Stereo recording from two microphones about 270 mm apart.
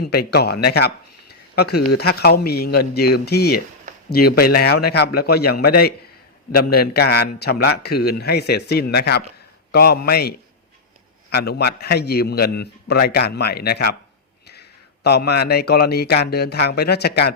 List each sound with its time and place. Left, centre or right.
0.0 s a man's voice: left
15.0 s a man's voice: left